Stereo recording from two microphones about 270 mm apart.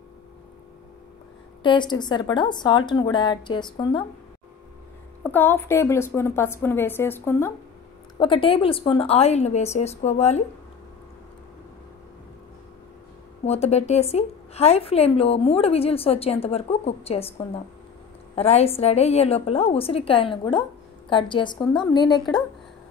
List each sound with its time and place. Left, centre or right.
1.6 s a woman's voice: centre
5.2 s a woman's voice: centre
8.2 s a woman's voice: centre
13.5 s a woman's voice: left